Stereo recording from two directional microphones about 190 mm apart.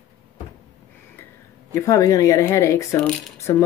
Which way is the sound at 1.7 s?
15° left (ahead or behind).